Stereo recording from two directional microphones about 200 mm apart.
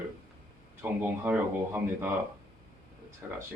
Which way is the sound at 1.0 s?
10° right (ahead or behind).